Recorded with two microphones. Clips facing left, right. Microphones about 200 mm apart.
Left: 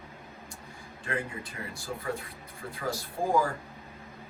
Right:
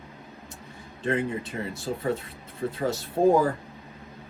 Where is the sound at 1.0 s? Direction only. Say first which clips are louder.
Right 8 dB; 25° right (ahead or behind).